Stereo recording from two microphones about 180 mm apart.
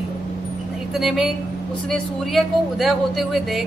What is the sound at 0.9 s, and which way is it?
A woman's voice, centre (ahead or behind).